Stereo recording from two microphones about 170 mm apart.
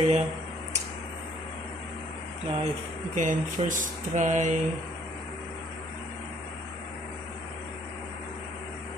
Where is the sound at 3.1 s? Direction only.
50° right (ahead or behind).